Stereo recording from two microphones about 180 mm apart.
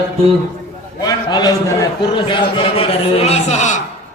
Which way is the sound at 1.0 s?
20° left (ahead or behind).